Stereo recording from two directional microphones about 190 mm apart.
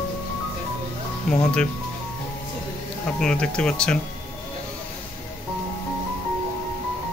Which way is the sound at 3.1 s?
5° left (ahead or behind).